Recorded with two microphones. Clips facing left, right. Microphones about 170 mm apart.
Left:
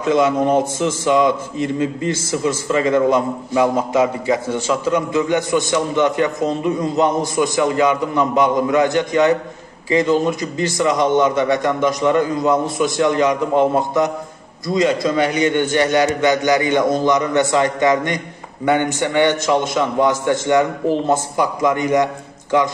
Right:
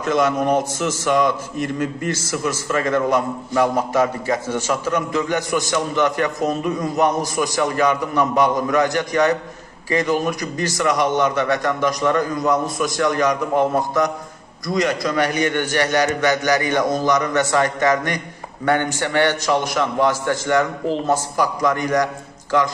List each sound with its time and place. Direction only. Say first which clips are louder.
0.0 s a man's voice: left 3 dB; 20° left (ahead or behind)
2.7 s a man's voice: left 3 dB; 20° left (ahead or behind)